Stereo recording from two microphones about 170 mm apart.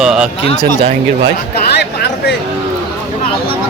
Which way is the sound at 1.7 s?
80° left.